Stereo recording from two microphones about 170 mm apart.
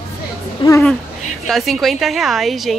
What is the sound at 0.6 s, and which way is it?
Speech, 30° left (ahead or behind).